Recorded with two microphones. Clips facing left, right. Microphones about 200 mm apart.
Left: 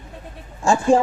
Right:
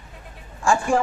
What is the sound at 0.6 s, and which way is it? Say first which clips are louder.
Speech: left 4 dB; 20° left (ahead or behind).